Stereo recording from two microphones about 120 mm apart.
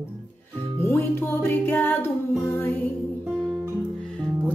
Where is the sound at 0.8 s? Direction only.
20° left (ahead or behind).